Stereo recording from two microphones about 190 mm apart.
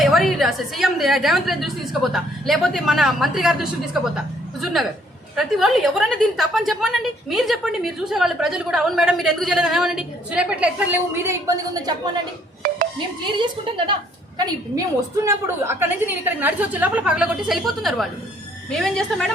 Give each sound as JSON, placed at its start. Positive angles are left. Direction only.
{"t": 0.0, "sound": "a woman's voice", "side_deg": 0}
{"t": 12.6, "sound": "a sound", "side_deg": -50}
{"t": 13.4, "sound": "a woman's voice", "side_deg": -25}